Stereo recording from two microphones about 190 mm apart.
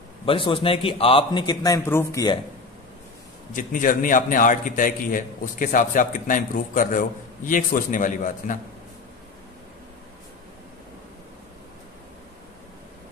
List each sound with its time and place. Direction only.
0.2 s a man's voice: 30° left (ahead or behind)
3.5 s a man's voice: 45° left (ahead or behind)